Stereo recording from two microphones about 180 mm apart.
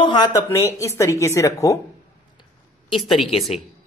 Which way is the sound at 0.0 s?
25° left (ahead or behind).